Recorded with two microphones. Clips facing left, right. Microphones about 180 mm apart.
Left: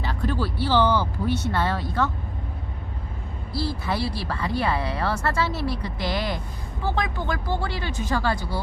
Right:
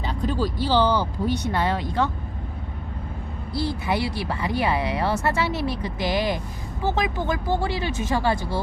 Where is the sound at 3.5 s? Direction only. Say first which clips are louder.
Right 2 dB; 20° right (ahead or behind).